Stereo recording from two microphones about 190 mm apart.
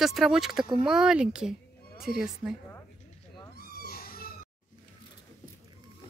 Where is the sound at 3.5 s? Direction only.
55° left (ahead or behind).